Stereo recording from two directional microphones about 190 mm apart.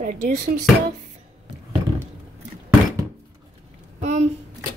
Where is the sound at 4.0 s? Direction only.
35° right (ahead or behind).